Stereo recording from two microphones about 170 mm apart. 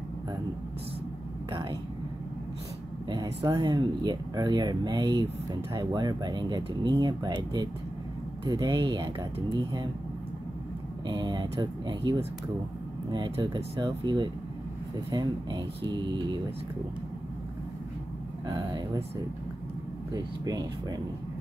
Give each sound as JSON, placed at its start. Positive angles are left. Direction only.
{"t": 1.5, "sound": "speech", "side_deg": -30}
{"t": 3.1, "sound": "speech", "side_deg": -25}
{"t": 8.5, "sound": "speech", "side_deg": -25}
{"t": 11.1, "sound": "speech", "side_deg": -25}
{"t": 18.5, "sound": "speech", "side_deg": -25}
{"t": 20.1, "sound": "speech", "side_deg": -20}